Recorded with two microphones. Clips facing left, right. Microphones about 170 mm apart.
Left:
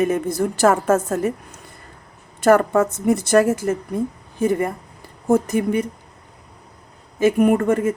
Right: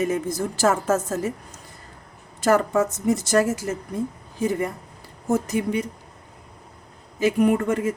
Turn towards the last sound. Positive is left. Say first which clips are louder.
# left 4 dB
turn(degrees=50)  # may be behind; listen again after turning